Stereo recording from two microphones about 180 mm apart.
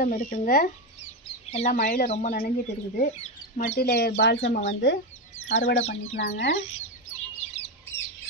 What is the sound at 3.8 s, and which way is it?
Speech, 60° left (ahead or behind).